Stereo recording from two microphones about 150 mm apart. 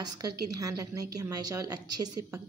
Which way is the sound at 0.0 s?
25° right (ahead or behind).